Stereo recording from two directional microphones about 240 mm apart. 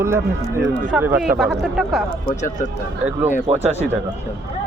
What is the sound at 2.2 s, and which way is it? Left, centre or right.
Speech, left.